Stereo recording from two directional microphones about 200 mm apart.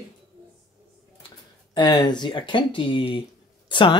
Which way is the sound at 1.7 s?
20° left (ahead or behind).